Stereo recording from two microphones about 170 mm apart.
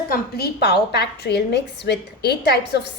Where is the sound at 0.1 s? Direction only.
70° left (ahead or behind).